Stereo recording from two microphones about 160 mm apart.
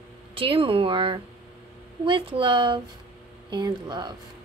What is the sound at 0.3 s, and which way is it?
Speech, 35° right (ahead or behind).